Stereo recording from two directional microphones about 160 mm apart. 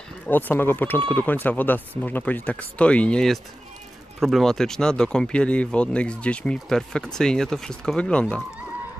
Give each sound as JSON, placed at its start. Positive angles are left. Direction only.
{"t": 0.3, "sound": "speech", "side_deg": 10}